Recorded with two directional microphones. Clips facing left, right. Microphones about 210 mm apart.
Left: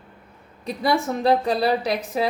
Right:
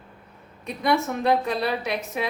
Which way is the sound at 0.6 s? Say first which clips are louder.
Left 1 dB; 35° left (ahead or behind).